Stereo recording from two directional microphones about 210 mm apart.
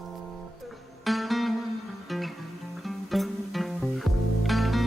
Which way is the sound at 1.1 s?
Centre (ahead or behind).